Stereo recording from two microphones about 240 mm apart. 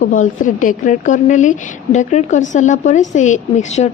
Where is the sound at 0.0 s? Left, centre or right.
Left.